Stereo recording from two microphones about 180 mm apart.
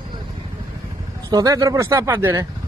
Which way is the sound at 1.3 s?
20° right (ahead or behind).